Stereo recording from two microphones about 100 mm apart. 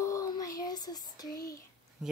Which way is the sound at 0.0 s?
35° left (ahead or behind).